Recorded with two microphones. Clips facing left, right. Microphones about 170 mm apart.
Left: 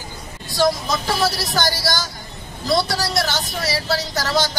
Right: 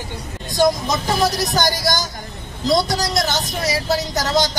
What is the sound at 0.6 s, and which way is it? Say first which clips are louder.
A man's voice: right 2 dB; 20° right (ahead or behind).